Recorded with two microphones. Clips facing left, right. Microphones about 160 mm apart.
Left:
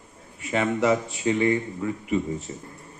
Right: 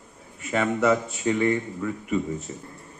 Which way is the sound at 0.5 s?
15° left (ahead or behind).